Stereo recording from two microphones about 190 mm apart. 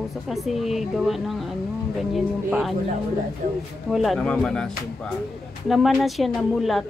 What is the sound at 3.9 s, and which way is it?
Speech, centre (ahead or behind).